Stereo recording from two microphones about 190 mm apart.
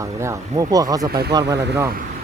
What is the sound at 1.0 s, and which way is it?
Speech, 55° right (ahead or behind).